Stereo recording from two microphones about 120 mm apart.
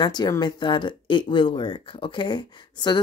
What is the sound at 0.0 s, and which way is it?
Speech, 35° left (ahead or behind).